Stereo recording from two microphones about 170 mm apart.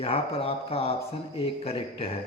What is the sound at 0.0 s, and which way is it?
Speech, 35° left (ahead or behind).